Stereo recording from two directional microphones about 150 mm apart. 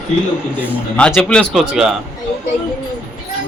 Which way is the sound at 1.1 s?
5° left (ahead or behind).